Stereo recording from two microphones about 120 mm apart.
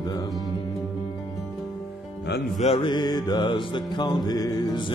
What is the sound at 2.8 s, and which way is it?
Mantra, 40° left (ahead or behind).